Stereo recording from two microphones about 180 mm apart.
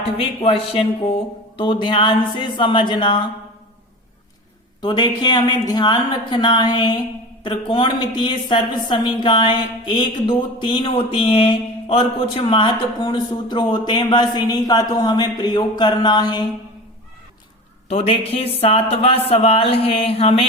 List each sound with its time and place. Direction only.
0.0 s a woman's voice: 30° left (ahead or behind)
4.8 s a woman's voice: 25° left (ahead or behind)
17.8 s speech: 35° left (ahead or behind)